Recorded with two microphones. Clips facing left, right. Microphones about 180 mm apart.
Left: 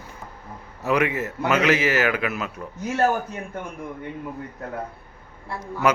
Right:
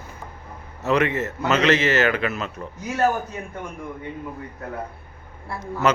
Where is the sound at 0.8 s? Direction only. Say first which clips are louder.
Right 1 dB; 10° left (ahead or behind).